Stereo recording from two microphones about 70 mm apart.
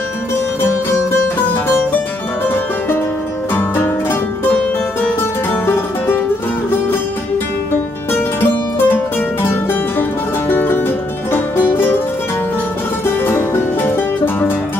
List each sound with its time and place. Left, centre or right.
3.5 s music: left
5.5 s music: left
8.7 s music: left
13.0 s music: left